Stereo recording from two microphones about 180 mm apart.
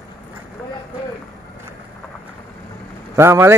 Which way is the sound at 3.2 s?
15° right (ahead or behind).